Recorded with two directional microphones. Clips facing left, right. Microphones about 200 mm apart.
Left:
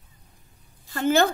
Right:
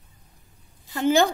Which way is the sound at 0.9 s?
15° right (ahead or behind).